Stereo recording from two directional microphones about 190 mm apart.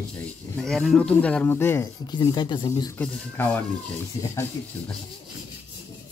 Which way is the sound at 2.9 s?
5° left (ahead or behind).